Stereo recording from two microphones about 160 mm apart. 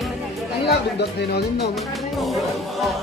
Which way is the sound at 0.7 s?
90° left.